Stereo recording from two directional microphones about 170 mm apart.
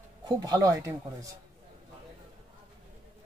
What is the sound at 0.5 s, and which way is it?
Speech, 20° right (ahead or behind).